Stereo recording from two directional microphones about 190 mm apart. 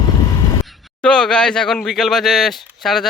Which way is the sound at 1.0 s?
5° left (ahead or behind).